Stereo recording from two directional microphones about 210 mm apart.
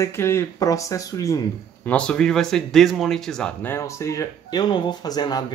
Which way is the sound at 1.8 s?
5° left (ahead or behind).